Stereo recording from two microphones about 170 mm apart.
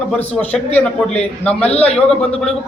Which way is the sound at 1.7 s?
35° left (ahead or behind).